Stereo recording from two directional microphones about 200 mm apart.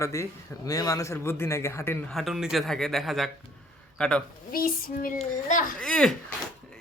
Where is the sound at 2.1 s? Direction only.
Centre (ahead or behind).